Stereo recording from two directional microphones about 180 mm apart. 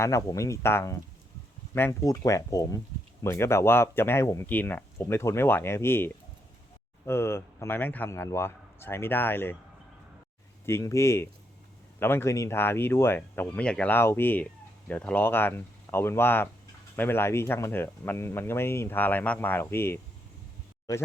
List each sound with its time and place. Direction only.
0.0 s speech: 20° left (ahead or behind)
10.7 s speech: 15° left (ahead or behind)